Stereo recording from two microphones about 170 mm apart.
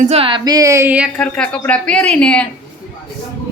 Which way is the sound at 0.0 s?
35° right (ahead or behind).